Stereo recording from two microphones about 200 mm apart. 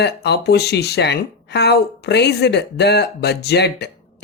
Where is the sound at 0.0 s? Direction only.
55° left (ahead or behind).